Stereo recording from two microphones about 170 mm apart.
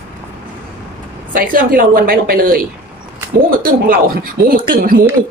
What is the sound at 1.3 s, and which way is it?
Speech, 60° right (ahead or behind).